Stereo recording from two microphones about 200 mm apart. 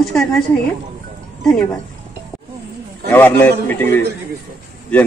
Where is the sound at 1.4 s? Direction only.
5° left (ahead or behind).